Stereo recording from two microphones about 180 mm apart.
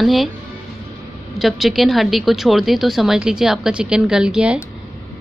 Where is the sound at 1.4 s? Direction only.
Centre (ahead or behind).